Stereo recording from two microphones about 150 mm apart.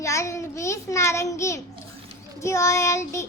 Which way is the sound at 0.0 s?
20° left (ahead or behind).